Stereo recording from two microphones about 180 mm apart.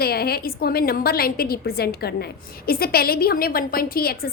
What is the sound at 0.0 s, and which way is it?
A woman's voice, 60° left (ahead or behind).